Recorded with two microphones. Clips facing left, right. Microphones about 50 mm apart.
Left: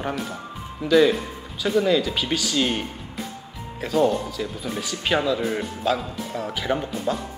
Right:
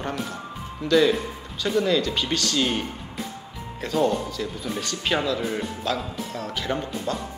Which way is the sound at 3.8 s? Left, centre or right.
Centre.